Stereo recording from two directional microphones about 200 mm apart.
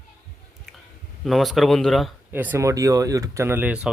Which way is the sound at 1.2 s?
Centre (ahead or behind).